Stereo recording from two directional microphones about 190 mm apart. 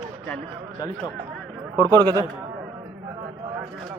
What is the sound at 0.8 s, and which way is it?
Speech, 20° left (ahead or behind).